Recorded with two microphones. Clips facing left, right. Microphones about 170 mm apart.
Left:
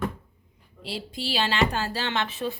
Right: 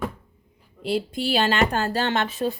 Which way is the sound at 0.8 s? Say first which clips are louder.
Right 9 dB; 55° right (ahead or behind).